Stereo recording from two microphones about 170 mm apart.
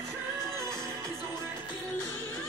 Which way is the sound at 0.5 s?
15° right (ahead or behind).